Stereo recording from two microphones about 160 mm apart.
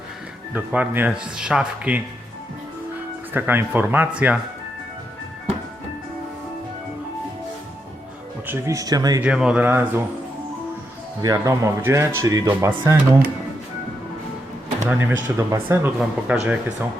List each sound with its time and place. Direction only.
0.5 s speech: 10° right (ahead or behind)
3.3 s speech: 10° right (ahead or behind)
8.4 s speech: 20° right (ahead or behind)
9.2 s speech: 5° right (ahead or behind)
11.2 s speech: 20° right (ahead or behind)
14.8 s speech: 15° right (ahead or behind)
16.0 s speech: 5° right (ahead or behind)